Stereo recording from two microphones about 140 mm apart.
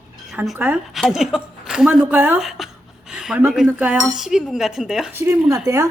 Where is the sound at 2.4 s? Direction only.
Centre (ahead or behind).